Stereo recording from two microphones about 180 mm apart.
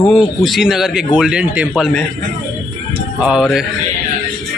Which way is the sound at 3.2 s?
5° right (ahead or behind).